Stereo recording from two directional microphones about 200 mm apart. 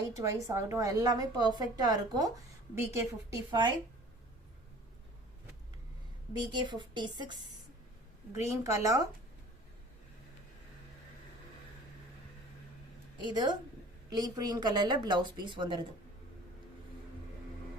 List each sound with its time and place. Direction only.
0.0 s a woman's voice: 15° right (ahead or behind)
6.3 s a woman's voice: 25° right (ahead or behind)
8.3 s a woman's voice: 15° right (ahead or behind)
13.2 s a woman's voice: 20° right (ahead or behind)